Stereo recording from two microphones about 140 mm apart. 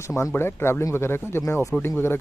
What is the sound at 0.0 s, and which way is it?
Speech, 20° left (ahead or behind).